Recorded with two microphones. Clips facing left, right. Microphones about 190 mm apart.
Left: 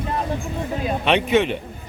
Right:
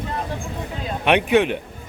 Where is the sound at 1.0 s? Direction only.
10° right (ahead or behind).